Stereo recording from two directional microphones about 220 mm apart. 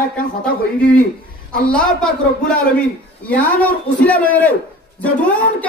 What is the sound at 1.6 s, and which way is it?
Speech, 5° left (ahead or behind).